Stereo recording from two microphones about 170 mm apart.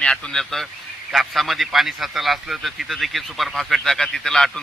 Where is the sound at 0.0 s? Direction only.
5° left (ahead or behind).